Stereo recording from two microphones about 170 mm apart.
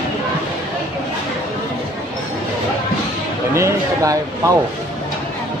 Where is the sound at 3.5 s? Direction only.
15° right (ahead or behind).